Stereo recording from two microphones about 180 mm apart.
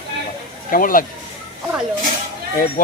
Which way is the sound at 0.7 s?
50° left (ahead or behind).